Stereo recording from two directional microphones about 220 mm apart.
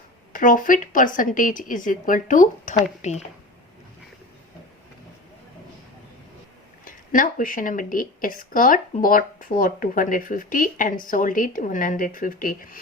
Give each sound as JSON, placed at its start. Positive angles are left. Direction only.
{"t": 0.3, "sound": "a woman's voice", "side_deg": 35}
{"t": 6.8, "sound": "a woman's voice", "side_deg": 40}